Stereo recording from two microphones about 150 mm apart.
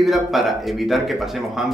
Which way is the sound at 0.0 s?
Centre (ahead or behind).